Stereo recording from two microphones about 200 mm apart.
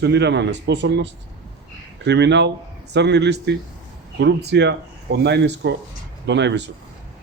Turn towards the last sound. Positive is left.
turn(degrees=-60)  # may be behind; listen again after turning